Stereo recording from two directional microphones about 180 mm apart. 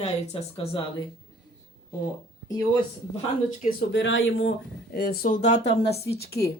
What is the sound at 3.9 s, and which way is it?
Speech, 90° left.